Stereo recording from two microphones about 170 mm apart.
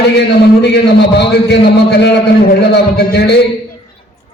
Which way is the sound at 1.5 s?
80° left.